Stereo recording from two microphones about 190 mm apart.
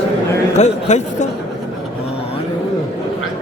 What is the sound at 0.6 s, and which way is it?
Speech, 40° left (ahead or behind).